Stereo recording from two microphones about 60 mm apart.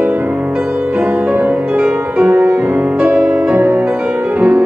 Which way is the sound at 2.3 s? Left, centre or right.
Right.